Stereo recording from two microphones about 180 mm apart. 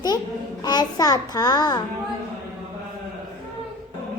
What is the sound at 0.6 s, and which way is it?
A child's voice, 20° left (ahead or behind).